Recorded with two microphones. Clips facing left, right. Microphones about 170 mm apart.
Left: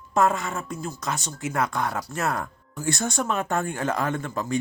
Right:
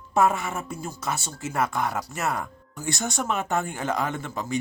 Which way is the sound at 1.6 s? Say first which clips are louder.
Right 1 dB; 20° right (ahead or behind).